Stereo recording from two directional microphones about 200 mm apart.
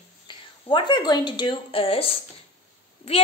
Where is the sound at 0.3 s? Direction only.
25° left (ahead or behind).